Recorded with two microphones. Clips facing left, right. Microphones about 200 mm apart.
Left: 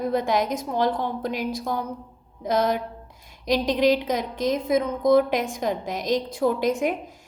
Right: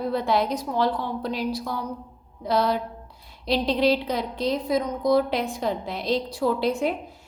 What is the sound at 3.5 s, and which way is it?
Speech, 15° left (ahead or behind).